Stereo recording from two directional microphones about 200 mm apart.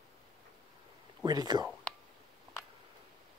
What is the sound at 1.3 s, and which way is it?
Speech, 20° right (ahead or behind).